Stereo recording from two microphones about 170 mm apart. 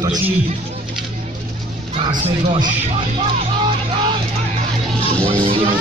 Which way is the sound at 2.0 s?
30° right (ahead or behind).